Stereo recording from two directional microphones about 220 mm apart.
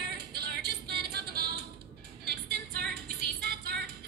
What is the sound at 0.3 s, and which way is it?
Music, 45° right (ahead or behind).